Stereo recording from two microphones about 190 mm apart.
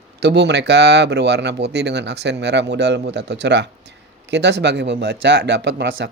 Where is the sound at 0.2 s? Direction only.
65° right (ahead or behind).